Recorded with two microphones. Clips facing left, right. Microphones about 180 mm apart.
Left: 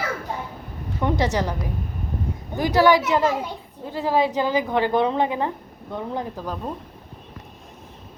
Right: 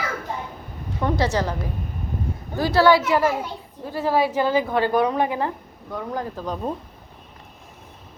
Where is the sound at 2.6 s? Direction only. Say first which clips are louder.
Even; 15° left (ahead or behind).